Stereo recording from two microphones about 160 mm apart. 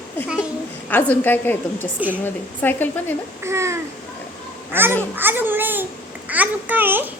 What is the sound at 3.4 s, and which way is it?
A child's voice, 15° right (ahead or behind).